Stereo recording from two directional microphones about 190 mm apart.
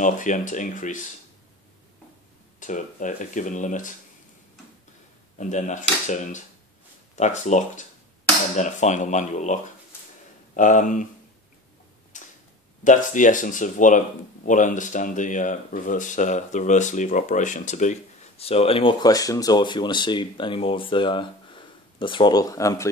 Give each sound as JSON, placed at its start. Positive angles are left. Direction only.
{"t": 0.0, "sound": "speech", "side_deg": 40}
{"t": 2.6, "sound": "speech", "side_deg": 40}
{"t": 5.4, "sound": "speech", "side_deg": 40}
{"t": 12.1, "sound": "tick-tock", "side_deg": 40}
{"t": 12.8, "sound": "speech", "side_deg": 40}